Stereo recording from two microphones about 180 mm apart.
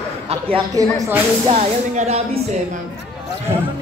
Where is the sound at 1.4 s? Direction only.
35° right (ahead or behind).